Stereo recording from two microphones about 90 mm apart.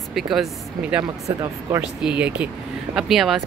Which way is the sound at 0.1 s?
Centre (ahead or behind).